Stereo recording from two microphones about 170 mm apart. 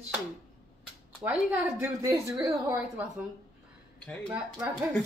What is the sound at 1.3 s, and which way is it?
A woman's voice, 10° right (ahead or behind).